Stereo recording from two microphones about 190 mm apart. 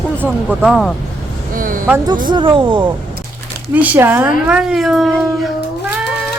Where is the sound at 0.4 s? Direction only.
Centre (ahead or behind).